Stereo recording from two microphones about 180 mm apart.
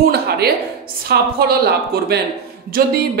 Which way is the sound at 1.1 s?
60° right (ahead or behind).